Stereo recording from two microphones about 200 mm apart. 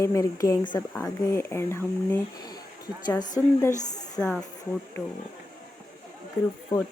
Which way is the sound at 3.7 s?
35° left (ahead or behind).